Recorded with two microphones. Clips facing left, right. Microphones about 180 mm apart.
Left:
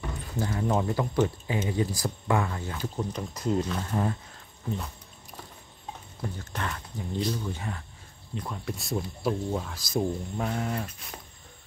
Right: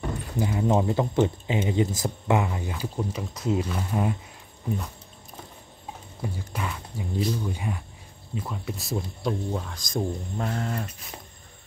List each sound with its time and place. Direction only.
0.4 s speech: 15° right (ahead or behind)
6.2 s speech: 10° right (ahead or behind)